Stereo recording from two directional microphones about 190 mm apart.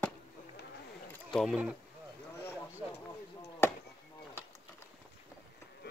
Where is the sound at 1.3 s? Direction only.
5° right (ahead or behind).